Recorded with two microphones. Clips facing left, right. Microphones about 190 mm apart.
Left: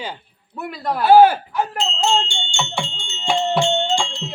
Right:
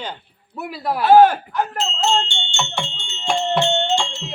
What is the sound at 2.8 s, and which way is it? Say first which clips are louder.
Speech: left 1 dB; centre (ahead or behind).